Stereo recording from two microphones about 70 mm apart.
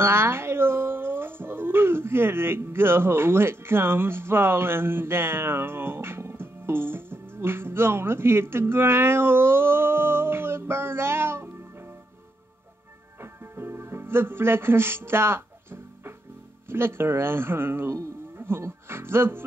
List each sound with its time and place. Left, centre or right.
0.0 s speech: right
13.2 s music: right
16.6 s speech: right
18.3 s music: right
18.6 s speech: right